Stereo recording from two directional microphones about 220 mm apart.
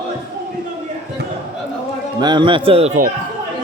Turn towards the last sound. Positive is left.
turn(degrees=-35)  # may be behind; listen again after turning